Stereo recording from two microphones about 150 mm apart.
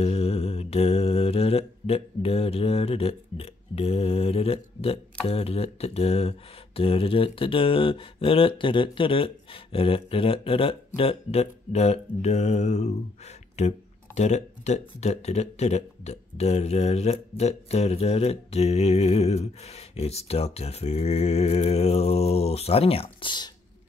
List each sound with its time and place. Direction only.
0.0 s mantra: 45° left (ahead or behind)
5.2 s speech: 40° left (ahead or behind)